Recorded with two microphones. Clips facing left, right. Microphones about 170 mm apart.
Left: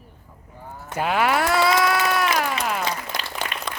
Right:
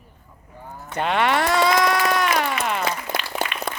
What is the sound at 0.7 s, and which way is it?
Speech, 5° left (ahead or behind).